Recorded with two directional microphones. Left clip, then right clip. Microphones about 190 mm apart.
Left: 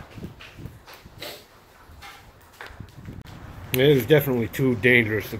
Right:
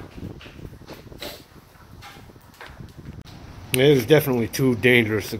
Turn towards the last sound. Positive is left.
turn(degrees=-20)  # may be behind; listen again after turning